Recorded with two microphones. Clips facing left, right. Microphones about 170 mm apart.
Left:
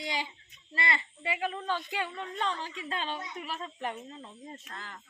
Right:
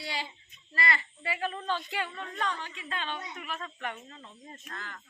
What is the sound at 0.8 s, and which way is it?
A woman's voice, 20° left (ahead or behind).